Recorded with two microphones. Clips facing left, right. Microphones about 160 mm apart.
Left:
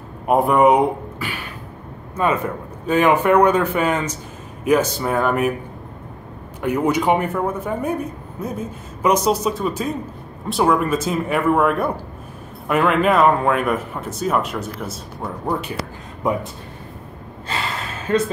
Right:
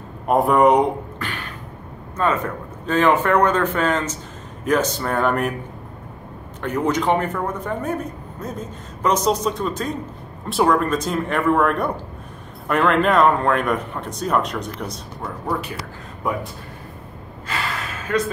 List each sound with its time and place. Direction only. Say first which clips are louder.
0.3 s a man's voice: left 1 dB; centre (ahead or behind)
6.6 s a man's voice: left 2 dB; 10° left (ahead or behind)
17.5 s gasp: left 1 dB; 30° left (ahead or behind)
18.1 s speech: left 3 dB; 30° left (ahead or behind)